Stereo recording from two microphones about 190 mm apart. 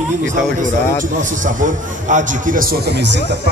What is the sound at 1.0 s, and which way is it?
A man's voice, 45° right (ahead or behind).